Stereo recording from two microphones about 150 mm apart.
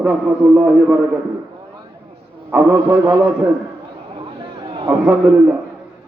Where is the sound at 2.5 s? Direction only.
15° right (ahead or behind).